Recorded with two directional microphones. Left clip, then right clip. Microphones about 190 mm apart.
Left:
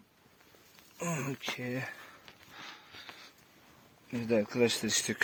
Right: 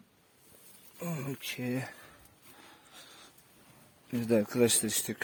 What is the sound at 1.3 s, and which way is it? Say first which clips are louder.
Speech: even; 35° right (ahead or behind).